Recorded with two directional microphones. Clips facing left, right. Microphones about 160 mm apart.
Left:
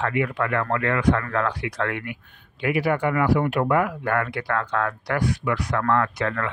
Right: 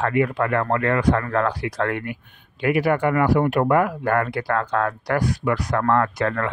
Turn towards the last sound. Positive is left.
turn(degrees=-40)  # may be behind; listen again after turning